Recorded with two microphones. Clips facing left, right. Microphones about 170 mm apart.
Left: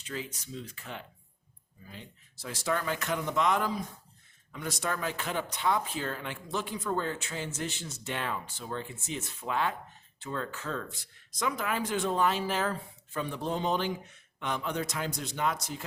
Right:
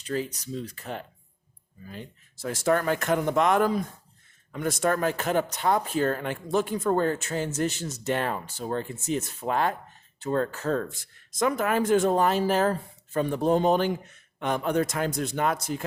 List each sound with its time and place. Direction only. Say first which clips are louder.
0.0 s speech: right 9 dB; 40° right (ahead or behind)